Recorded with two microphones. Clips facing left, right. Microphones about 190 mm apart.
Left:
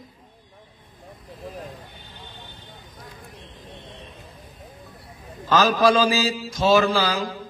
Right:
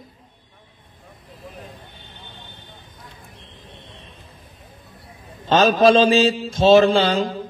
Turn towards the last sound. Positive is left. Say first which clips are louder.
# right 5 dB
turn(degrees=-25)  # may be behind; listen again after turning